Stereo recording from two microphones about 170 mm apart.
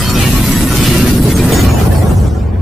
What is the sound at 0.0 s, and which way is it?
Music, centre (ahead or behind).